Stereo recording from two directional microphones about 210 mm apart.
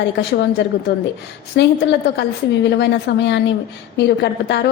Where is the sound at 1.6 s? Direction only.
55° left (ahead or behind).